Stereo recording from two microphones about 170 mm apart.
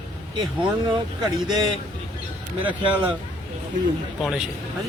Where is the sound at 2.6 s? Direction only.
10° right (ahead or behind).